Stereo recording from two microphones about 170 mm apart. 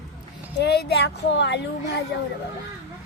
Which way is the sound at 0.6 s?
75° left (ahead or behind).